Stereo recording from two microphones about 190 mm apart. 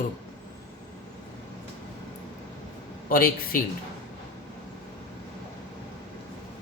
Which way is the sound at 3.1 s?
50° left (ahead or behind).